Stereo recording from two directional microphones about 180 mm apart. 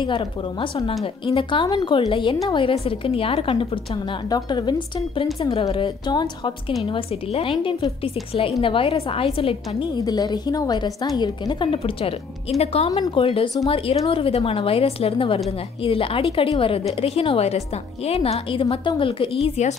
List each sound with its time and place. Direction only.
0.0 s a woman's voice: 25° left (ahead or behind)